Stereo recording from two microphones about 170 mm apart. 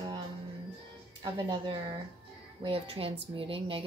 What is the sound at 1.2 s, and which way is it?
A woman's voice, 25° right (ahead or behind).